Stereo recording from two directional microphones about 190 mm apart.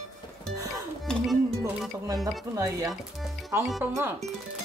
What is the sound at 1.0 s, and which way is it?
Music, centre (ahead or behind).